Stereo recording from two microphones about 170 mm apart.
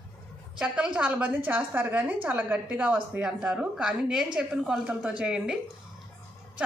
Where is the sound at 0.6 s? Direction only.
5° right (ahead or behind).